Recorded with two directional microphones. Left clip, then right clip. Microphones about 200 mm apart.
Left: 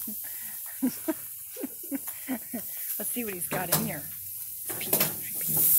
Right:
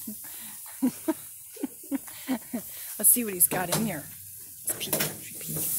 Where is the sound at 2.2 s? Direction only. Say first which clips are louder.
Right 3 dB; 35° right (ahead or behind).